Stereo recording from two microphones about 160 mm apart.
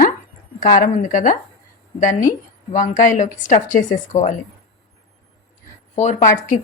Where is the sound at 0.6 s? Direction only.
50° left (ahead or behind).